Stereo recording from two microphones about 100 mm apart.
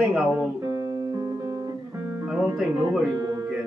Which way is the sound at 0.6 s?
35° right (ahead or behind).